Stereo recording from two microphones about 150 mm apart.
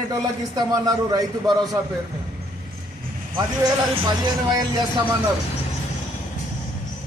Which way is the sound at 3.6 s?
25° right (ahead or behind).